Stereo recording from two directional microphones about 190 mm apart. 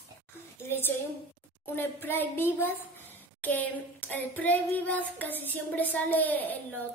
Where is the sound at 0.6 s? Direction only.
10° left (ahead or behind).